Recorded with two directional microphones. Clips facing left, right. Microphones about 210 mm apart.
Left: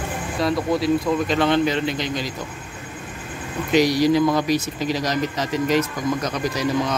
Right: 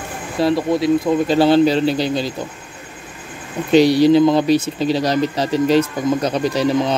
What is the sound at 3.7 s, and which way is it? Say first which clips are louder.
Speech: right 6 dB; 30° right (ahead or behind).